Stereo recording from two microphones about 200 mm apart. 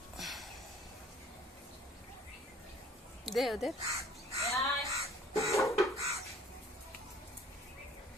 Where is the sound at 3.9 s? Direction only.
30° right (ahead or behind).